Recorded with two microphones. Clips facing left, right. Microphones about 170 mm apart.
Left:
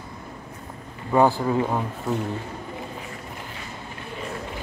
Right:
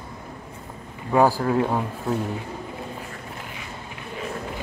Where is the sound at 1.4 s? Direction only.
Centre (ahead or behind).